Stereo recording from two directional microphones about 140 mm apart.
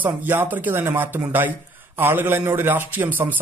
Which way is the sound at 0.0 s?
15° right (ahead or behind).